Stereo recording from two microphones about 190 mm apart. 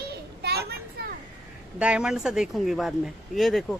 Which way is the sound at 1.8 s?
5° right (ahead or behind).